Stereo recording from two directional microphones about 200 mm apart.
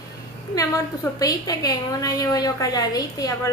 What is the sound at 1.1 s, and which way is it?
A woman's voice, 20° left (ahead or behind).